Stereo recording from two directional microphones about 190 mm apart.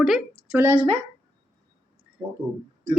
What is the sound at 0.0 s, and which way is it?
Speech, 5° right (ahead or behind).